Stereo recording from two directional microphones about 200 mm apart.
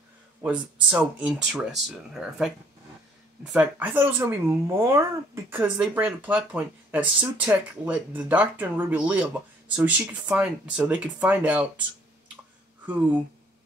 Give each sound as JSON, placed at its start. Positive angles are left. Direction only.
{"t": 0.4, "sound": "speech", "side_deg": -5}
{"t": 12.8, "sound": "speech", "side_deg": -5}